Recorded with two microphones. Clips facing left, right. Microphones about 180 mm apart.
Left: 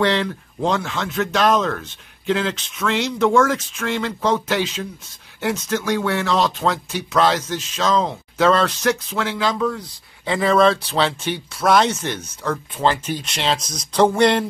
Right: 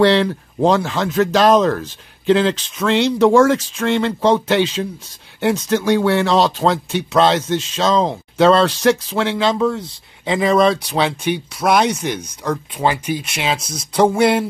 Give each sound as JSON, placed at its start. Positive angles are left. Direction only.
{"t": 0.0, "sound": "speech", "side_deg": -30}